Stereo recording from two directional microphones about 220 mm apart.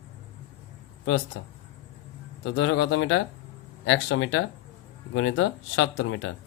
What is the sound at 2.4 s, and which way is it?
Speech, 55° left (ahead or behind).